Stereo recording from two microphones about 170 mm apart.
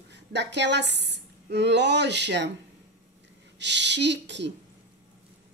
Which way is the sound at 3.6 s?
90° right.